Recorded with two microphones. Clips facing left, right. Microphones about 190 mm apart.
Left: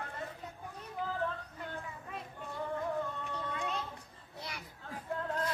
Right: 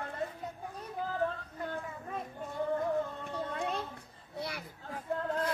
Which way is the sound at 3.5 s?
55° right (ahead or behind).